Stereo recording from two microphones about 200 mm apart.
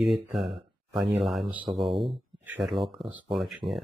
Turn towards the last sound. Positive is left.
turn(degrees=0)  # may be behind; listen again after turning